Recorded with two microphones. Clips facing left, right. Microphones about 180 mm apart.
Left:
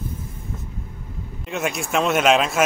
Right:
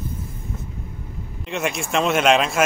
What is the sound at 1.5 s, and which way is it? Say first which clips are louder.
Speech: even; centre (ahead or behind).